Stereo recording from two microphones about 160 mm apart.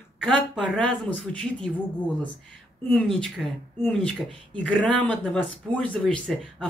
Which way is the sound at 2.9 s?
Centre (ahead or behind).